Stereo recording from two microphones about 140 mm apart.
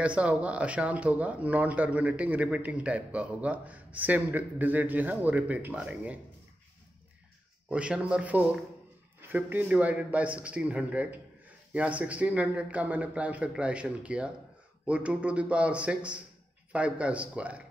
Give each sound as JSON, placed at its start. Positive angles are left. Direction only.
{"t": 0.0, "sound": "speech", "side_deg": -10}
{"t": 7.7, "sound": "speech", "side_deg": -10}